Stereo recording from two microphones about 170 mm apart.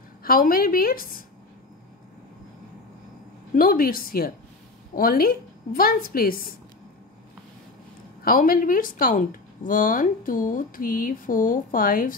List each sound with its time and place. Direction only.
0.2 s a woman's voice: 60° left (ahead or behind)
3.5 s a woman's voice: 60° left (ahead or behind)
8.2 s speech: 55° left (ahead or behind)